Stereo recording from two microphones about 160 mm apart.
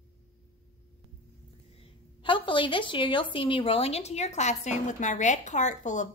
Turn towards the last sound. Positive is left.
turn(degrees=50)  # may be behind; listen again after turning